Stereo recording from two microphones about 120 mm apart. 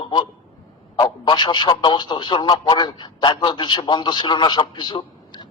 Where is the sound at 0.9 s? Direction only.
40° left (ahead or behind).